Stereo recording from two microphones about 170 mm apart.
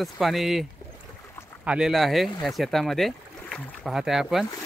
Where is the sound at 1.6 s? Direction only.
5° right (ahead or behind).